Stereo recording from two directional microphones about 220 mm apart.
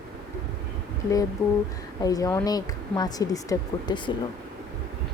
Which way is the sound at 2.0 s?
15° left (ahead or behind).